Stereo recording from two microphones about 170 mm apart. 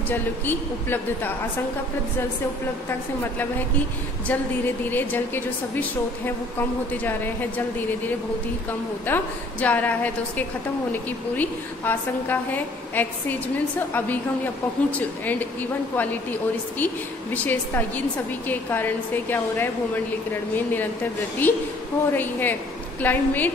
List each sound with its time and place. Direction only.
0.1 s a woman's voice: 10° left (ahead or behind)
4.3 s a woman's voice: 10° left (ahead or behind)
9.0 s a woman's voice: 10° left (ahead or behind)